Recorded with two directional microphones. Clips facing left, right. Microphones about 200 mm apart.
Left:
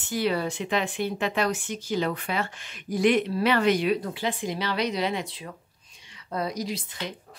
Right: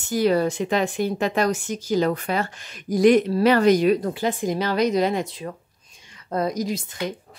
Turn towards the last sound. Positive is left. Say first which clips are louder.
# right 6 dB
turn(degrees=-45)  # may be behind; listen again after turning